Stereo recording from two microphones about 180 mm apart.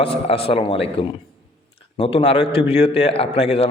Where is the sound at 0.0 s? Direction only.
30° left (ahead or behind).